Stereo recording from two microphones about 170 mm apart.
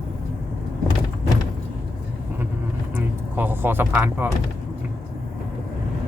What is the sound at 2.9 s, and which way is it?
Speech, 10° right (ahead or behind).